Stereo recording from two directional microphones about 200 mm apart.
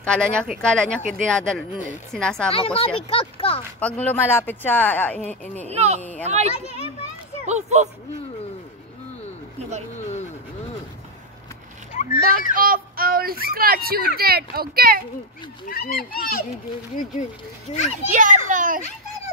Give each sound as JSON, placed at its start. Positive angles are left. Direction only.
{"t": 0.0, "sound": "speech", "side_deg": 5}
{"t": 2.5, "sound": "speech", "side_deg": 30}
{"t": 3.8, "sound": "speech", "side_deg": 10}
{"t": 5.7, "sound": "a child's voice", "side_deg": -35}
{"t": 9.9, "sound": "vehicle", "side_deg": 35}
{"t": 11.9, "sound": "splash", "side_deg": 40}
{"t": 12.5, "sound": "speech", "side_deg": -45}
{"t": 15.7, "sound": "speech", "side_deg": 45}
{"t": 18.1, "sound": "a child's voice", "side_deg": -40}